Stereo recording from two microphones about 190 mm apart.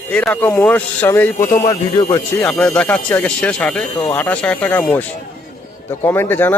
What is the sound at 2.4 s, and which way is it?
Speech, 5° left (ahead or behind).